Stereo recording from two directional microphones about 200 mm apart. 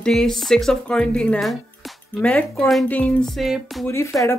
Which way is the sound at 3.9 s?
15° left (ahead or behind).